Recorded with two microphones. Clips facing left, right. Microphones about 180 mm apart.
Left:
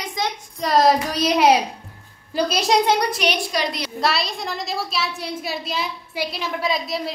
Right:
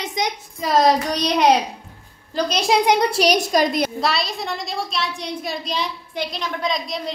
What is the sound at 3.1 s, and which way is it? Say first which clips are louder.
Speech: right 5 dB; 40° right (ahead or behind).